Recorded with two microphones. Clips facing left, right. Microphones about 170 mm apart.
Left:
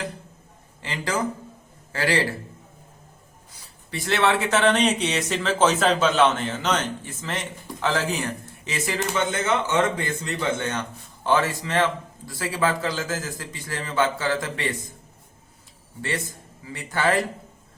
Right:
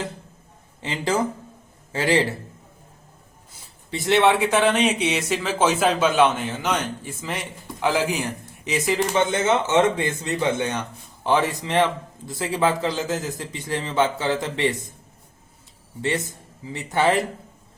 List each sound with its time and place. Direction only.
0.8 s a man's voice: 20° right (ahead or behind)
3.9 s a man's voice: 20° right (ahead or behind)
16.0 s a man's voice: 20° right (ahead or behind)